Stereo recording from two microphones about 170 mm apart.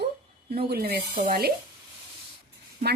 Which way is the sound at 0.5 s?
65° right (ahead or behind).